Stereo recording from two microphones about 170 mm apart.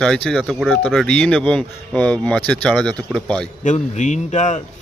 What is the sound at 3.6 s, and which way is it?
Speech, 45° left (ahead or behind).